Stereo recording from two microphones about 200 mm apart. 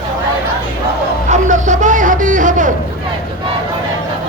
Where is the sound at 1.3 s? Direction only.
40° right (ahead or behind).